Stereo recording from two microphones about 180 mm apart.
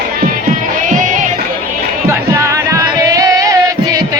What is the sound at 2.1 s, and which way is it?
Music, 15° right (ahead or behind).